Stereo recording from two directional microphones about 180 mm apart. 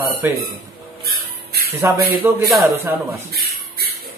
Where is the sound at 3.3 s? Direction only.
60° right (ahead or behind).